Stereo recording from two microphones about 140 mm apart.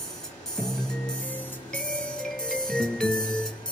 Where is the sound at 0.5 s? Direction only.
5° left (ahead or behind).